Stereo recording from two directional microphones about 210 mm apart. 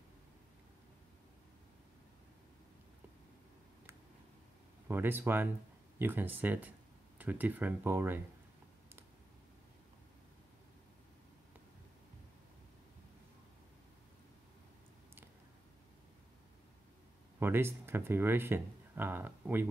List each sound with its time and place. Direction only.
4.8 s speech: 10° right (ahead or behind)
17.4 s speech: 10° right (ahead or behind)